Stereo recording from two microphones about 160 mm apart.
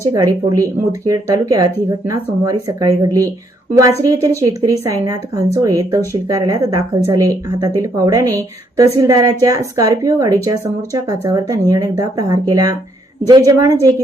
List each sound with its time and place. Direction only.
0.0 s a woman's voice: 20° right (ahead or behind)